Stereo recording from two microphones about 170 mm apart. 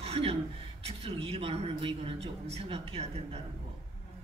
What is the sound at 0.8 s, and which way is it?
A man's voice, 35° right (ahead or behind).